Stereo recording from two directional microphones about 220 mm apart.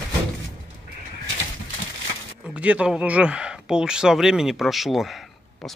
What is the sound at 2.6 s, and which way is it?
Speech, 5° right (ahead or behind).